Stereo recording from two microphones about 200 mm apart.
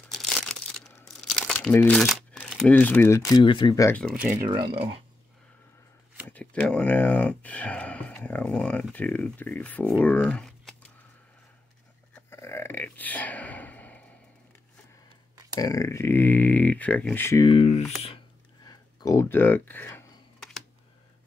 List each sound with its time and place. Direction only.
0.1 s crumpling: centre (ahead or behind)
1.0 s speech: 5° left (ahead or behind)
4.0 s speech: 5° right (ahead or behind)
4.5 s speech: 25° right (ahead or behind)
6.3 s speech: 5° left (ahead or behind)
12.3 s gasp: 15° left (ahead or behind)
15.6 s speech: 15° left (ahead or behind)
17.5 s speech: 30° left (ahead or behind)
18.0 s a sound: 25° left (ahead or behind)